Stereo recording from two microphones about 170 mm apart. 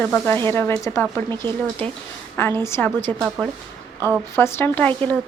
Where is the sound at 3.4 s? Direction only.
5° right (ahead or behind).